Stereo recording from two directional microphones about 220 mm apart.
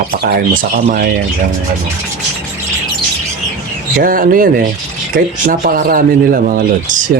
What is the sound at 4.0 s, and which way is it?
Speech, 40° right (ahead or behind).